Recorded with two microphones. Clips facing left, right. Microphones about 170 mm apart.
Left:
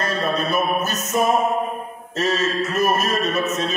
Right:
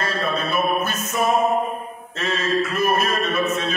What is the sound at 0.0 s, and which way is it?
Music, 40° left (ahead or behind).